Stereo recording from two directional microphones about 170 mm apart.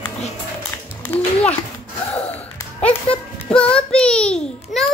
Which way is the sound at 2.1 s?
10° left (ahead or behind).